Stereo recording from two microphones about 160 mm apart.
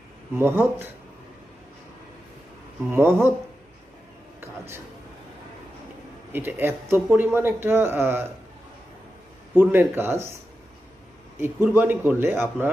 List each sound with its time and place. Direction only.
0.3 s a man's voice: 15° right (ahead or behind)
2.9 s a man's voice: 15° right (ahead or behind)
4.4 s a sound: 15° right (ahead or behind)
6.3 s a man's voice: 15° right (ahead or behind)
9.6 s a man's voice: 15° right (ahead or behind)
11.3 s a man's voice: 15° right (ahead or behind)